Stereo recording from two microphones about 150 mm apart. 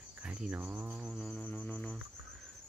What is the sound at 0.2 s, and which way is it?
Cricket, 10° right (ahead or behind).